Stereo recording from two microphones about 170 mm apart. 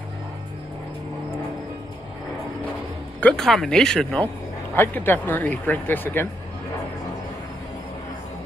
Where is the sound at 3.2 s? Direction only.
5° left (ahead or behind).